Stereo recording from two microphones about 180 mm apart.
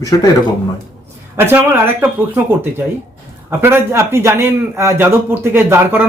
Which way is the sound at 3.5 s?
15° right (ahead or behind).